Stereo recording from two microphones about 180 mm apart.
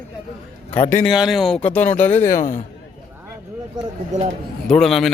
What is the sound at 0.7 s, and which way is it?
Speech, 35° left (ahead or behind).